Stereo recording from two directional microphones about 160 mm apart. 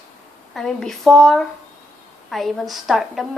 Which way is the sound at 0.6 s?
5° left (ahead or behind).